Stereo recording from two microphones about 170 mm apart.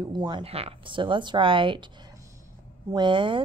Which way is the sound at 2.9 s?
30° right (ahead or behind).